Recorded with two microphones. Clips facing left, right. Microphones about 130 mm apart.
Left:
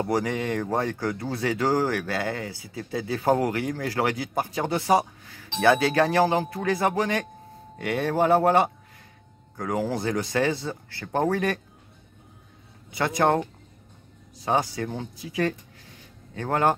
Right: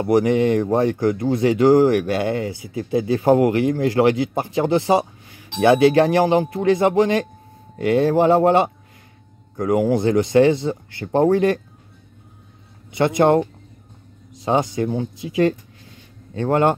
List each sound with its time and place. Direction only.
0.0 s speech: 20° right (ahead or behind)
12.9 s speech: 25° right (ahead or behind)